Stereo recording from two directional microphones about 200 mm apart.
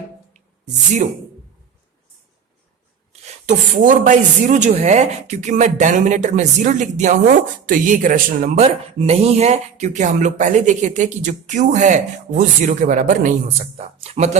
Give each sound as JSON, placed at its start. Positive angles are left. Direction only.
{"t": 3.1, "sound": "speech", "side_deg": -35}
{"t": 8.5, "sound": "speech", "side_deg": -30}